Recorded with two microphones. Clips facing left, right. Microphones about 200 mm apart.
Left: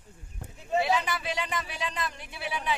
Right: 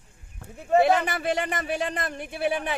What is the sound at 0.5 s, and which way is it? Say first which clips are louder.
Speech: right 7 dB; 55° right (ahead or behind).